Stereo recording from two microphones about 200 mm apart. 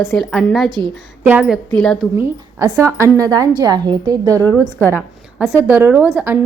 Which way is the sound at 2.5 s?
10° right (ahead or behind).